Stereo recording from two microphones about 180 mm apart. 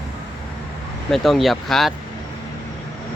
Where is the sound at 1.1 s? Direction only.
Centre (ahead or behind).